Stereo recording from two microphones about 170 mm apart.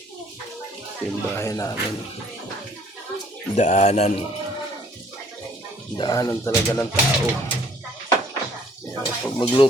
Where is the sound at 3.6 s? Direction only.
45° left (ahead or behind).